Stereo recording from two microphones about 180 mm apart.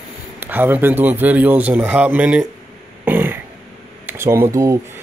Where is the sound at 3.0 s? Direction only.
10° right (ahead or behind).